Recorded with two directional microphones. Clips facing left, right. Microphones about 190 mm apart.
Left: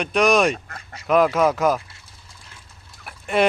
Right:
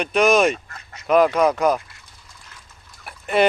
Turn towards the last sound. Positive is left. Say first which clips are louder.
# right 1 dB
turn(degrees=0)  # may be behind; listen again after turning